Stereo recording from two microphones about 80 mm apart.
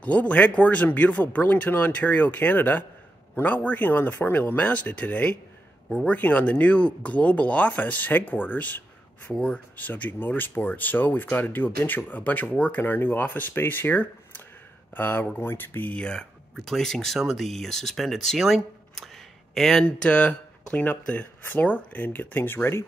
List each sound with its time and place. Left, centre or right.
0.0 s speech: centre
16.0 s speech: centre; by 22.8 s left